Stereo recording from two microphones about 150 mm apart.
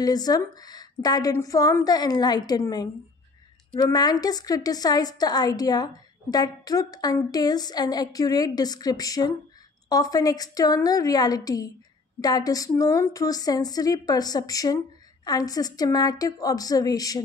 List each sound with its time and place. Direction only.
0.0 s a woman's voice: 25° left (ahead or behind)